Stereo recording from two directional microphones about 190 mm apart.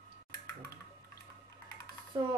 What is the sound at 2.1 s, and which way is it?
Speech, 20° right (ahead or behind).